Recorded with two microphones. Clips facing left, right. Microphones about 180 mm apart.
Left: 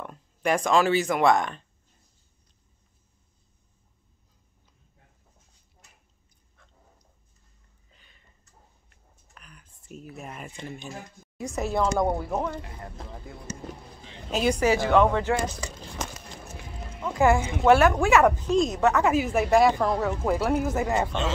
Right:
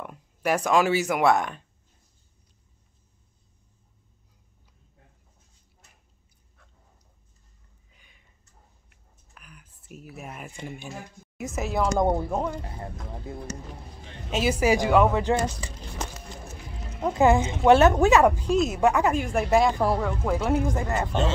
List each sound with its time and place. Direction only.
0.0 s speech: 10° right (ahead or behind)
7.9 s a sound: 10° right (ahead or behind)
9.3 s speech: 5° right (ahead or behind)
11.8 s a woman's voice: 25° right (ahead or behind)
14.3 s a woman's voice: 5° right (ahead or behind)
17.2 s a woman's voice: 20° right (ahead or behind)
19.0 s speech: centre (ahead or behind)